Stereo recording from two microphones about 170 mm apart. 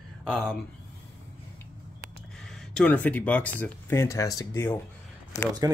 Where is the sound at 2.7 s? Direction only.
10° left (ahead or behind).